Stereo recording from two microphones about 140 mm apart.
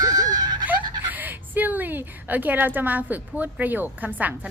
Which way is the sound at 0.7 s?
10° right (ahead or behind).